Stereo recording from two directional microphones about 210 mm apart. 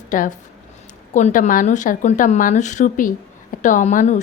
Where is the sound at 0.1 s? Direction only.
40° left (ahead or behind).